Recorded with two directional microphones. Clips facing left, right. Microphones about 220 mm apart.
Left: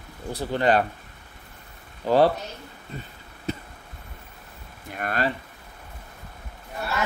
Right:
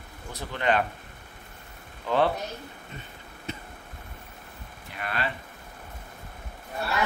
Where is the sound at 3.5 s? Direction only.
35° left (ahead or behind).